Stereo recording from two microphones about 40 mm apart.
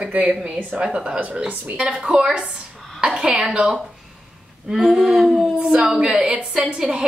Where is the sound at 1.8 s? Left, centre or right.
Centre.